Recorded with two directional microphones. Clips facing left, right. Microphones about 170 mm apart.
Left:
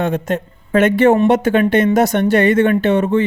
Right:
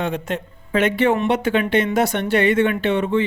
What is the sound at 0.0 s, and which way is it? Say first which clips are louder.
Speech: left 5 dB; 45° left (ahead or behind).